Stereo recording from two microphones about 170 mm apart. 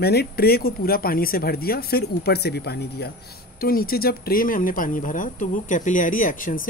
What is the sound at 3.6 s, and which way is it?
Speech, 60° left (ahead or behind).